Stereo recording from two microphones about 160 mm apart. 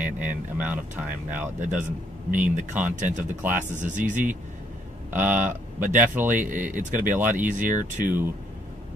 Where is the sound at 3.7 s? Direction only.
50° right (ahead or behind).